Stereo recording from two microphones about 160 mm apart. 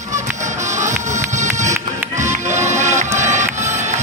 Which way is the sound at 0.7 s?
50° right (ahead or behind).